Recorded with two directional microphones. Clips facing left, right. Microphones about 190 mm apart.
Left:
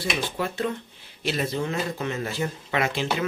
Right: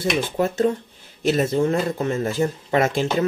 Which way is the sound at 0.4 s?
40° right (ahead or behind).